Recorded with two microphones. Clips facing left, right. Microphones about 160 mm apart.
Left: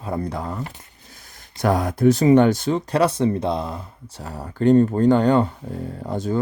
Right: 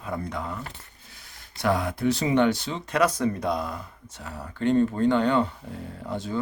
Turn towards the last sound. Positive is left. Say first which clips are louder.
# left 6 dB
turn(degrees=45)  # may be behind; listen again after turning